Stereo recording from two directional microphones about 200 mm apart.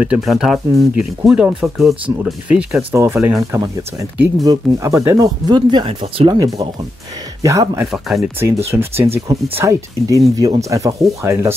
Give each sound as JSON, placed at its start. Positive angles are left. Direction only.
{"t": 0.0, "sound": "speech", "side_deg": -5}